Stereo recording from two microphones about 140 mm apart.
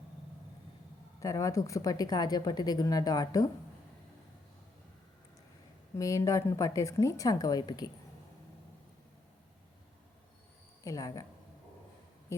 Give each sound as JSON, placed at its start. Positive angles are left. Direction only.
{"t": 1.2, "sound": "a woman's voice", "side_deg": 25}
{"t": 6.0, "sound": "a woman's voice", "side_deg": 25}
{"t": 10.8, "sound": "a woman's voice", "side_deg": 25}